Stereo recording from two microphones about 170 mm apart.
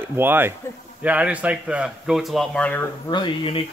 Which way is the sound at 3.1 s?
25° left (ahead or behind).